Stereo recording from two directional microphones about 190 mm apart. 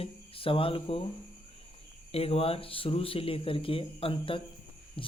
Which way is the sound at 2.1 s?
30° left (ahead or behind).